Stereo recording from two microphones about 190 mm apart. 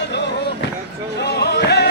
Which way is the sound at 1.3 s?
60° left (ahead or behind).